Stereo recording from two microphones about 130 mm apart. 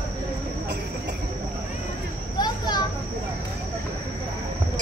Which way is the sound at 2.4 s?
35° left (ahead or behind).